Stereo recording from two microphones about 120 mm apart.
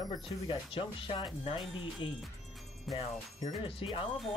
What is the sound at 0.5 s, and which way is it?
Speech, 45° left (ahead or behind).